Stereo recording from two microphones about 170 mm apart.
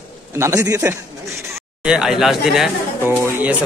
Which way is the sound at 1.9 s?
5° right (ahead or behind).